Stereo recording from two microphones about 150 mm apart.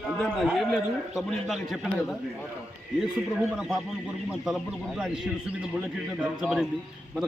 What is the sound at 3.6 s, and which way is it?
A man's voice, centre (ahead or behind).